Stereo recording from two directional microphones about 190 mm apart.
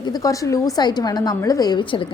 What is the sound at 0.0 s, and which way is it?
A woman's voice, 20° left (ahead or behind).